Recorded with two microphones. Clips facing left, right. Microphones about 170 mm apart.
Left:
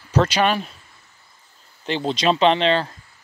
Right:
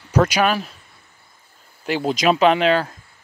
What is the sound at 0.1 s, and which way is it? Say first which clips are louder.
Speech: right 1 dB; 10° right (ahead or behind).